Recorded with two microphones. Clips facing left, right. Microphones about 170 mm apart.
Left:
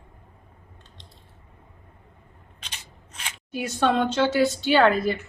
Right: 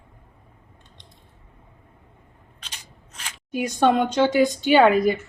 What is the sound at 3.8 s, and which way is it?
A woman's voice, 15° right (ahead or behind).